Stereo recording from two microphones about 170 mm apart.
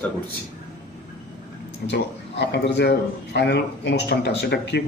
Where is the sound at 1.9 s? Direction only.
85° left.